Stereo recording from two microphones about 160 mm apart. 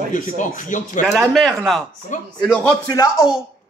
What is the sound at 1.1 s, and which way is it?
A man's voice, centre (ahead or behind).